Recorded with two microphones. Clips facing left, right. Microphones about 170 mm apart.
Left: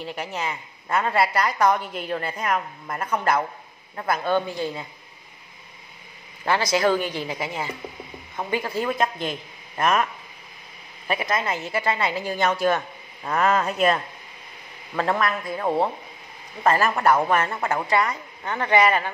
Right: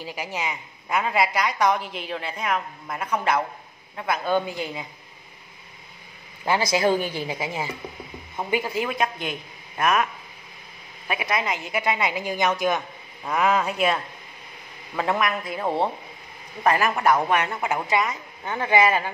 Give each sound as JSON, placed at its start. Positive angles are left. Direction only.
{"t": 0.0, "sound": "a woman's voice", "side_deg": 0}
{"t": 1.6, "sound": "a woman's voice", "side_deg": 0}
{"t": 6.4, "sound": "a woman's voice", "side_deg": -15}
{"t": 11.1, "sound": "a woman's voice", "side_deg": -10}
{"t": 15.0, "sound": "a woman's voice", "side_deg": -15}